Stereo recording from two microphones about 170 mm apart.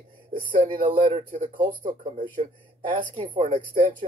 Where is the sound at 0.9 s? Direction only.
30° right (ahead or behind).